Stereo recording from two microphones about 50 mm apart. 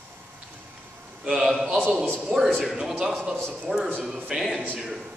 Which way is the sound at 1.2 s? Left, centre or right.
Centre.